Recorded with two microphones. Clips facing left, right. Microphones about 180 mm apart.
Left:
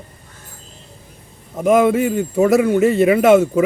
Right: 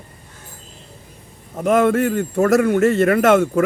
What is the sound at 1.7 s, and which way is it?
A man's voice, 10° left (ahead or behind).